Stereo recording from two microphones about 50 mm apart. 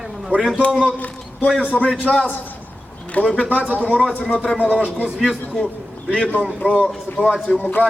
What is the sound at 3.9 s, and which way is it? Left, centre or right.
Speech, centre.